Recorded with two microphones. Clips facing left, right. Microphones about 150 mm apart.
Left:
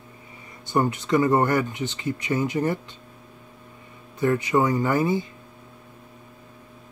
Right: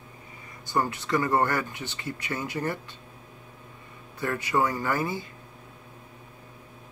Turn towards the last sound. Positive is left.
turn(degrees=20)  # may be behind; listen again after turning